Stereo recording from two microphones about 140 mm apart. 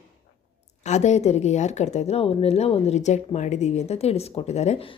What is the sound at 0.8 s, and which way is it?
Speech, 55° left (ahead or behind).